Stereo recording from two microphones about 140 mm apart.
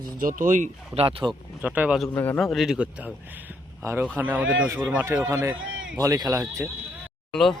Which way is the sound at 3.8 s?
25° right (ahead or behind).